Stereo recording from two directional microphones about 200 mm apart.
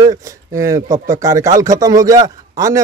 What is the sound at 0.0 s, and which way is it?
Speech, 15° right (ahead or behind).